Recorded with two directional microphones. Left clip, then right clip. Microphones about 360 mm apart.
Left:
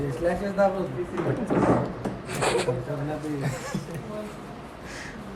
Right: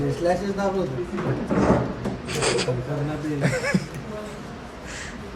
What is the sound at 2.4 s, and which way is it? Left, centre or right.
Speech, centre.